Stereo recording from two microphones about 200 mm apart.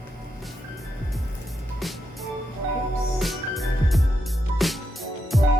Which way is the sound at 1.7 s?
Centre (ahead or behind).